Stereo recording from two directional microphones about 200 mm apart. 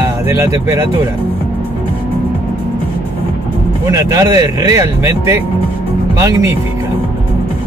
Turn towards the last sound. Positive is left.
turn(degrees=-15)  # may be behind; listen again after turning